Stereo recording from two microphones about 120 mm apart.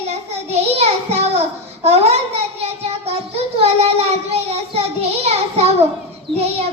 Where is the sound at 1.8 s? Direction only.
60° right (ahead or behind).